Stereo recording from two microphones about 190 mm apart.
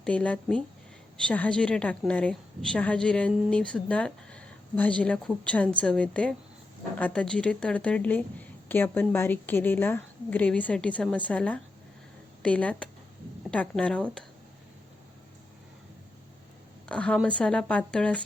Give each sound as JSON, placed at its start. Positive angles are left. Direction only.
{"t": 0.0, "sound": "a woman's voice", "side_deg": 5}
{"t": 16.9, "sound": "a woman's voice", "side_deg": 5}